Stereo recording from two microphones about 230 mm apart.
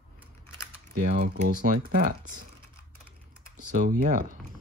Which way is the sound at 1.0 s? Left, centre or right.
Right.